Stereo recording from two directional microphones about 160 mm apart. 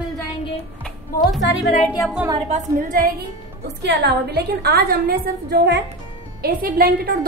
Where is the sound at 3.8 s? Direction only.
90° right.